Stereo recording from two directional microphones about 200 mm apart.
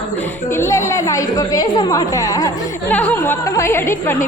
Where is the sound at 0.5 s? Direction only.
15° left (ahead or behind).